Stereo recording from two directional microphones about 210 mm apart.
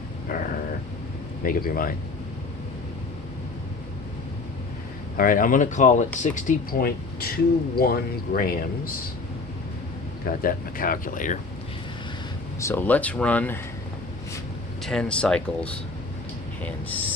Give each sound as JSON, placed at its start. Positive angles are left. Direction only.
{"t": 1.4, "sound": "speech", "side_deg": 40}
{"t": 5.1, "sound": "speech", "side_deg": 40}
{"t": 10.2, "sound": "speech", "side_deg": 40}
{"t": 12.5, "sound": "speech", "side_deg": 10}
{"t": 14.8, "sound": "speech", "side_deg": 5}